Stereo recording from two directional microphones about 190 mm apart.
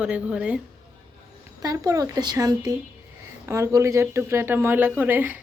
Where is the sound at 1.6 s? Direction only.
20° right (ahead or behind).